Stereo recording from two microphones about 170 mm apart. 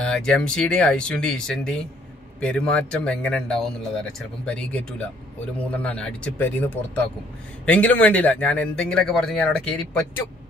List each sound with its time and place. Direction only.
0.0 s speech: 5° left (ahead or behind)